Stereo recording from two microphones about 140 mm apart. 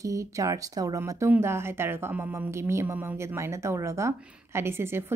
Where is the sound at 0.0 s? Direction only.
25° right (ahead or behind).